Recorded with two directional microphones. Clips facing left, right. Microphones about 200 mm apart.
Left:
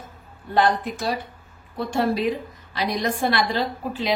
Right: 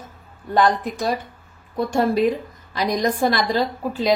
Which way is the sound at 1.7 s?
45° right (ahead or behind).